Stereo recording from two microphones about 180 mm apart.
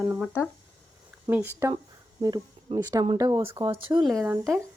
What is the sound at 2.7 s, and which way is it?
Speech, 35° right (ahead or behind).